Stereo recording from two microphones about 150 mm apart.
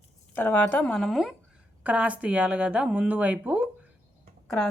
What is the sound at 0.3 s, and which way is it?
Speech, 15° left (ahead or behind).